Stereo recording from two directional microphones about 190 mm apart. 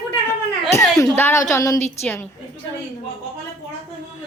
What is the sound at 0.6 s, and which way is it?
A woman's voice, 15° left (ahead or behind).